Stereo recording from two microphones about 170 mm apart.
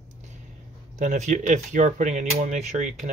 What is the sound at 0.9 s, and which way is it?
Speech, 45° right (ahead or behind).